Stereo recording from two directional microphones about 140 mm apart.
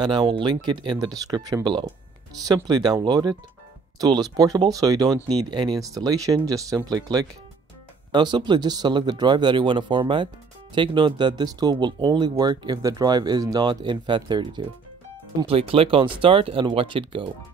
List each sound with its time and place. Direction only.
0.0 s speech: 35° right (ahead or behind)